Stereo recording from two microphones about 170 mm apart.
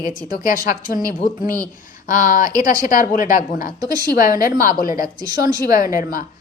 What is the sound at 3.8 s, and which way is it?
Speech, 20° right (ahead or behind).